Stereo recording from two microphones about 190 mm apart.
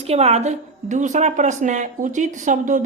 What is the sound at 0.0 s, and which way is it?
Speech, 35° right (ahead or behind).